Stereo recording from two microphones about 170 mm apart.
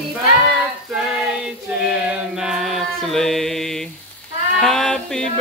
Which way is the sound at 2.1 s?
5° right (ahead or behind).